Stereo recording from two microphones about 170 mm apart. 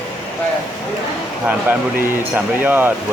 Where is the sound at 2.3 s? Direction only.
10° right (ahead or behind).